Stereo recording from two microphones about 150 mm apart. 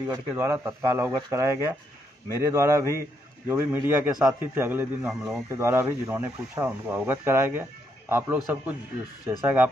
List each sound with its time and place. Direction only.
0.0 s speech: 15° right (ahead or behind)
5.0 s speech: 5° right (ahead or behind)
5.5 s speech: 15° right (ahead or behind)